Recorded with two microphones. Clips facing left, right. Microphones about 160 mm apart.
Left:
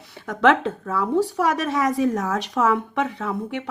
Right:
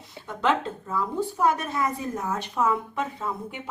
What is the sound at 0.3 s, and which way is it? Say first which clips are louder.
A woman's voice: left 7 dB; 85° left.